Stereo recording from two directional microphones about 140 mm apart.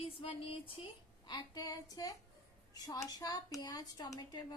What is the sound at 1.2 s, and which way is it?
A woman's voice, 30° left (ahead or behind).